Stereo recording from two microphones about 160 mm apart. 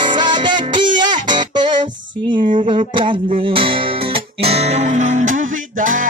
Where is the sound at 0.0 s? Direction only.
30° right (ahead or behind).